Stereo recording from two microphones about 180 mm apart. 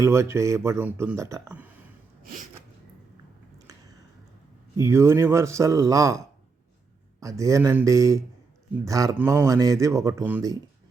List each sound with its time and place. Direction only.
0.0 s speech: 15° right (ahead or behind)
4.8 s speech: 15° right (ahead or behind)